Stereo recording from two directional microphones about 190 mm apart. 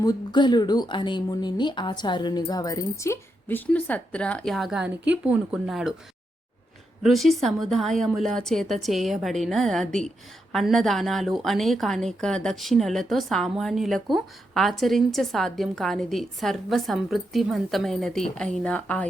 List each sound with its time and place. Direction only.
0.0 s a woman's voice: 20° left (ahead or behind); by 5.9 s centre (ahead or behind)
7.0 s a woman's voice: centre (ahead or behind)